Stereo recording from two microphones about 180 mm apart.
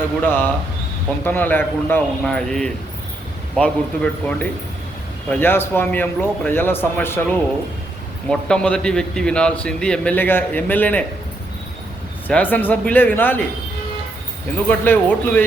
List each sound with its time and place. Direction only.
0.2 s a man's voice: 10° left (ahead or behind)
12.3 s a man's voice: 10° left (ahead or behind)
14.7 s a man's voice: 10° left (ahead or behind)